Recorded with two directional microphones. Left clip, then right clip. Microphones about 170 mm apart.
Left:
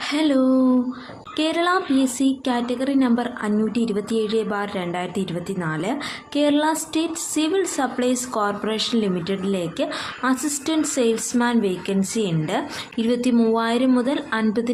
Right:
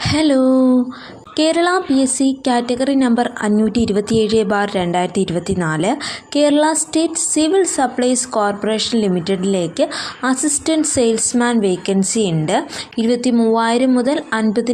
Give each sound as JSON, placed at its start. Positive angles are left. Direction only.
{"t": 0.0, "sound": "a woman's voice", "side_deg": -25}